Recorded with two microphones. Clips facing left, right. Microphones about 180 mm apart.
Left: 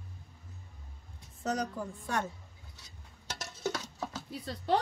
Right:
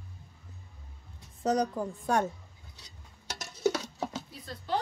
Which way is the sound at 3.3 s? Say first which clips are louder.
Right 7 dB; 20° right (ahead or behind).